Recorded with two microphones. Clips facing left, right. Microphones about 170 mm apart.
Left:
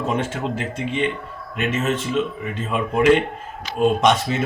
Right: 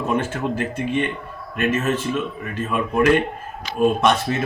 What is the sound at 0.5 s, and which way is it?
A man's voice, 20° left (ahead or behind).